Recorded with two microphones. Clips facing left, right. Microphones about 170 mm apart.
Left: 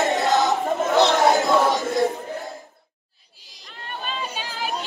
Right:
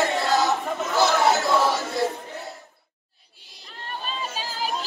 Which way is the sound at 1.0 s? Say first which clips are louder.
Left 2 dB; 15° left (ahead or behind).